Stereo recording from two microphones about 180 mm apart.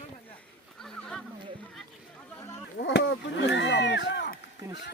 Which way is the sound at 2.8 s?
75° left (ahead or behind).